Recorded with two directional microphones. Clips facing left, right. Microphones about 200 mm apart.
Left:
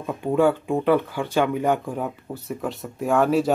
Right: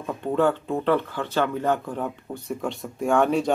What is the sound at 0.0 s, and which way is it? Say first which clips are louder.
Speech: left 2 dB; 10° left (ahead or behind).